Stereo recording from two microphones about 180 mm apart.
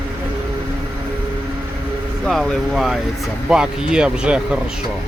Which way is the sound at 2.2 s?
Centre (ahead or behind).